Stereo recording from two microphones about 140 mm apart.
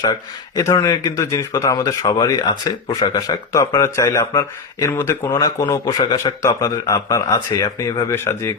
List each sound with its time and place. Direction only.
0.0 s a man's voice: 25° left (ahead or behind)